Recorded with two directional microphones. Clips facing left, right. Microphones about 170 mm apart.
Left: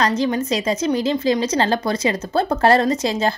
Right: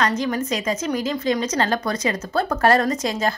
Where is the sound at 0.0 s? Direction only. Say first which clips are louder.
Left 3 dB; 30° left (ahead or behind).